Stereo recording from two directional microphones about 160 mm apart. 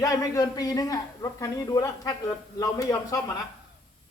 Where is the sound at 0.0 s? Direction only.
20° left (ahead or behind).